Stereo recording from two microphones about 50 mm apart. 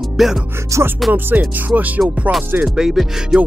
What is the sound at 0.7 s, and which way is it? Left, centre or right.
Music, right.